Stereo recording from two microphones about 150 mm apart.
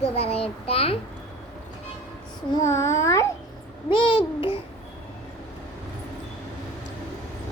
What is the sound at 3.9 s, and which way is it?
Speech, 35° left (ahead or behind).